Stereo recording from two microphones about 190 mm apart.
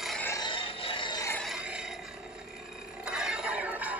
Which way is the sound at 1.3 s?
Centre (ahead or behind).